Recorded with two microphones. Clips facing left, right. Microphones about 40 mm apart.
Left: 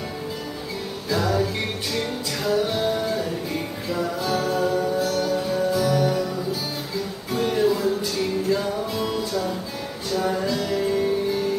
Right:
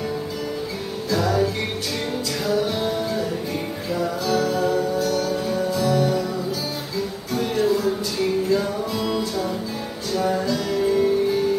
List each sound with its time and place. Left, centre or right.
1.1 s music: centre
4.3 s music: centre
4.6 s music: centre
7.3 s music: centre